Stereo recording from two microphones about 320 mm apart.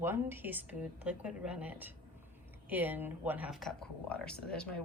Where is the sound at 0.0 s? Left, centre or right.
Centre.